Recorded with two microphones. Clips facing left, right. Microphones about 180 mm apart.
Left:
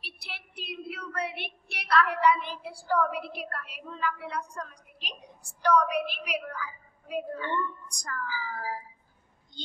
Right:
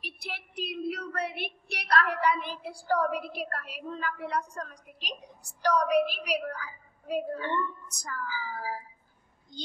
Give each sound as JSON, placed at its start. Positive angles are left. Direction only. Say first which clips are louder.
{"t": 0.0, "sound": "a woman's voice", "louder": "right 5 dB", "side_deg": -45}
{"t": 7.9, "sound": "speech", "louder": "left 1 dB", "side_deg": -5}